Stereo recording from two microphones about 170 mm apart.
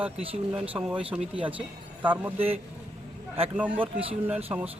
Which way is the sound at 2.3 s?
35° right (ahead or behind).